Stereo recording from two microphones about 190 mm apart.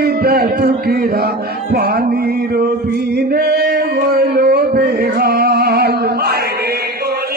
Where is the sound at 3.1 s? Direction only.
60° right (ahead or behind).